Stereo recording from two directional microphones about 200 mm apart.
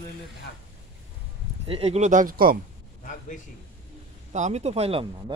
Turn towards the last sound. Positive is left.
turn(degrees=-25)  # may be behind; listen again after turning